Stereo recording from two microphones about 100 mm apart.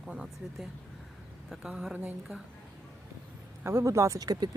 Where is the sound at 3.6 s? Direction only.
30° right (ahead or behind).